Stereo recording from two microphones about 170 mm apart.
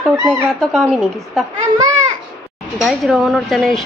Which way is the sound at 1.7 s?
20° right (ahead or behind).